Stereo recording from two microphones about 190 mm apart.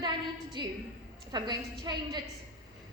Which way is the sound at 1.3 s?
20° right (ahead or behind).